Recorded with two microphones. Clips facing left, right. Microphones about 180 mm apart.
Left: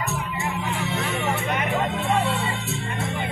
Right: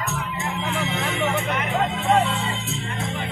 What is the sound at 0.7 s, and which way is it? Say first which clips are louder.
Music: right 1 dB; 90° right.